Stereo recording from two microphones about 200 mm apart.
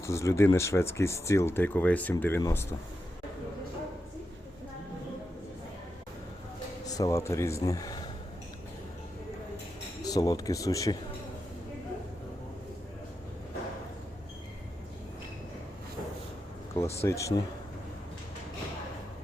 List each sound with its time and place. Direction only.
0.0 s speech: 15° left (ahead or behind)
6.8 s speech: 15° left (ahead or behind)
10.0 s speech: 20° left (ahead or behind)
16.7 s speech: 15° left (ahead or behind)